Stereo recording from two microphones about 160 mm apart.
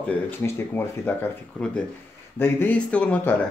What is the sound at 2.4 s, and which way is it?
Speech, 10° left (ahead or behind).